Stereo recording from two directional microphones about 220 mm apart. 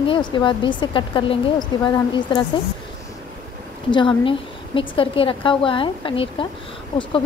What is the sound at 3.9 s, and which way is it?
A woman's voice, 20° left (ahead or behind).